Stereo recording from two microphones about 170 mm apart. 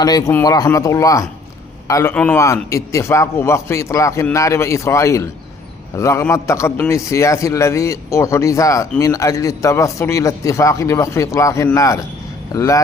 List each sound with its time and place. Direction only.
0.0 s a man's voice: 20° left (ahead or behind)
2.1 s a man's voice: 5° left (ahead or behind)
2.6 s a man's voice: 20° left (ahead or behind)